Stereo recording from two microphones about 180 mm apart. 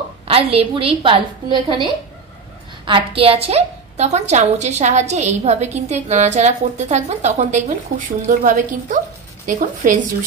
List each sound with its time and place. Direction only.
0.3 s a woman's voice: 35° right (ahead or behind)